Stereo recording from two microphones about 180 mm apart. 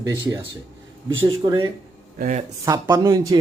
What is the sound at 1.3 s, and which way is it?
Speech, 30° right (ahead or behind).